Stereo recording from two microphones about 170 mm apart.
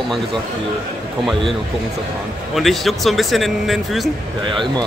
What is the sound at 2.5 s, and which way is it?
Speech, centre (ahead or behind).